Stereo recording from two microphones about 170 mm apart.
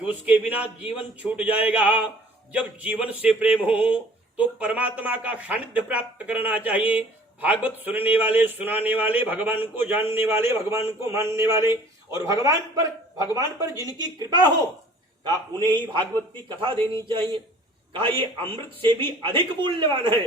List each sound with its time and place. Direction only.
0.0 s a man's voice: 10° right (ahead or behind); by 20.2 s 30° right (ahead or behind)